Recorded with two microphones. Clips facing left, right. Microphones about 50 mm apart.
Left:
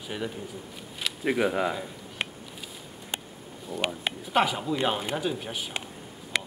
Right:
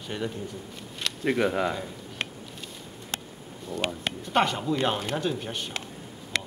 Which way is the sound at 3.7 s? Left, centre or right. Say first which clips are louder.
Even; centre.